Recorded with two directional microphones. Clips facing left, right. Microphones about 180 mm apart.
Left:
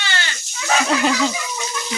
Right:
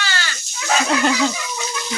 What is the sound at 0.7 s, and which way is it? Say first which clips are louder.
Speech: even; centre (ahead or behind).